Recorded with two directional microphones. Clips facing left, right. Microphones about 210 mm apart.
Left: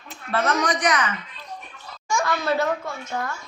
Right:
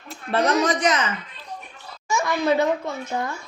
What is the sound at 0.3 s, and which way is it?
Speech, 35° right (ahead or behind).